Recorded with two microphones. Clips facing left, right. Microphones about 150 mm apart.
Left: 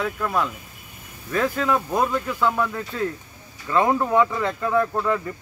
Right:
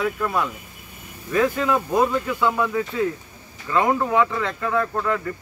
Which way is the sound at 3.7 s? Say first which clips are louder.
Even; 5° left (ahead or behind).